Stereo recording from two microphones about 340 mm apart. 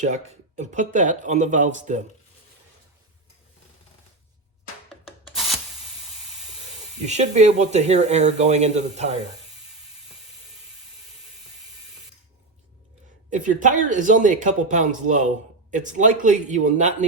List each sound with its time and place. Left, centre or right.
0.0 s speech: right
5.3 s rub: centre
7.0 s speech: centre
13.3 s speech: right